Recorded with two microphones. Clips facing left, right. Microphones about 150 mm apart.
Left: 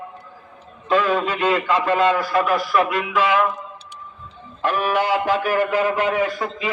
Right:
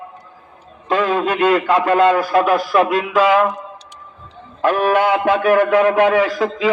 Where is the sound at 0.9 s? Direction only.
55° right (ahead or behind).